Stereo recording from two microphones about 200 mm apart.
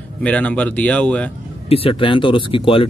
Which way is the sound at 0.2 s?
5° left (ahead or behind).